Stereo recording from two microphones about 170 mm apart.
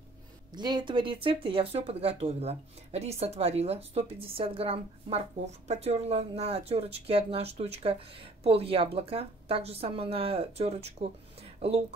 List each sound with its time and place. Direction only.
0.5 s speech: 25° right (ahead or behind)